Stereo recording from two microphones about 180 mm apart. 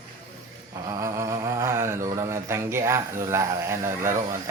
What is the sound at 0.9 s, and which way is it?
A man's voice, 15° right (ahead or behind).